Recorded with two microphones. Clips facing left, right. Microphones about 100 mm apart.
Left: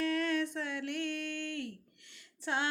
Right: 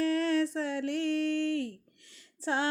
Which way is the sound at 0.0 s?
35° right (ahead or behind).